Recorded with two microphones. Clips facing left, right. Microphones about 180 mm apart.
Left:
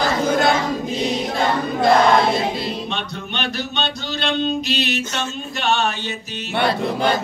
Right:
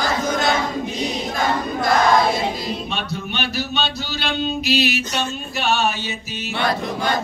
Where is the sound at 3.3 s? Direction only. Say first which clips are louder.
Even; 5° right (ahead or behind).